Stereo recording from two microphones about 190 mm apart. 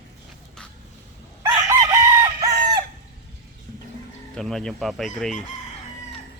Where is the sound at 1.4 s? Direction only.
15° right (ahead or behind).